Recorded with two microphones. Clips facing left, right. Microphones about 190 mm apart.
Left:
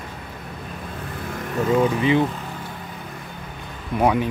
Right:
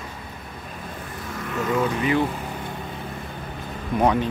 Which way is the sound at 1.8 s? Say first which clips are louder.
Left 3 dB; 20° left (ahead or behind).